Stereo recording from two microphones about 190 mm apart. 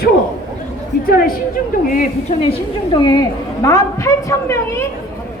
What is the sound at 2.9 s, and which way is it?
A woman's voice, 20° left (ahead or behind).